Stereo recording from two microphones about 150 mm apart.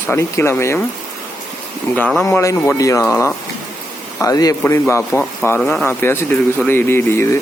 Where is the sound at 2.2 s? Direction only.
20° left (ahead or behind); by 5.8 s 5° left (ahead or behind).